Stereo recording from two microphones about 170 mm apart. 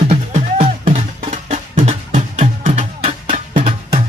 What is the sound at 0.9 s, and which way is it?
Music, 50° right (ahead or behind).